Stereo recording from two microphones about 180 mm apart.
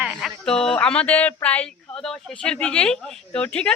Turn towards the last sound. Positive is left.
turn(degrees=5)  # may be behind; listen again after turning